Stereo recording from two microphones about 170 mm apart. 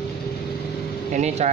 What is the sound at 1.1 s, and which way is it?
Air conditioning, 40° right (ahead or behind).